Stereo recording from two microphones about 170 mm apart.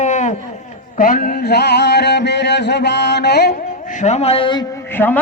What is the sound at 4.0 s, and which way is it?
Speech, 40° left (ahead or behind).